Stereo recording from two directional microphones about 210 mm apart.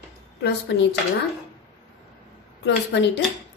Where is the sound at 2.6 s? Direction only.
55° left (ahead or behind).